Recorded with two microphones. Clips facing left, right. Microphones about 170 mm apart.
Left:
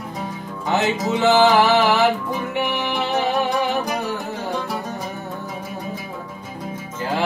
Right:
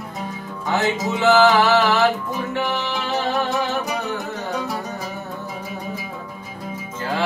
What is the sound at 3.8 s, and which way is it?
Music, centre (ahead or behind).